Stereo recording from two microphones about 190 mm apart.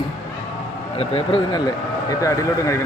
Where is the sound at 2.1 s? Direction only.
15° left (ahead or behind).